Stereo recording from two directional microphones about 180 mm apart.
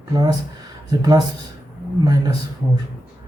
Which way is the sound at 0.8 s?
25° right (ahead or behind).